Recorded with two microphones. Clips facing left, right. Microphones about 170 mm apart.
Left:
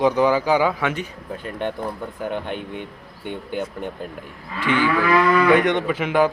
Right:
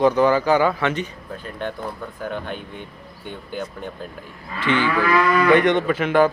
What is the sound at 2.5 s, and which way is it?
Speech, 65° left (ahead or behind).